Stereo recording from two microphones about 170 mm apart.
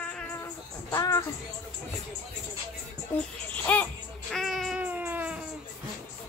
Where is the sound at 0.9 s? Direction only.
20° left (ahead or behind).